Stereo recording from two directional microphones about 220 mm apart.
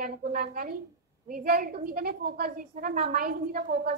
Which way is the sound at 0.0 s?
40° right (ahead or behind).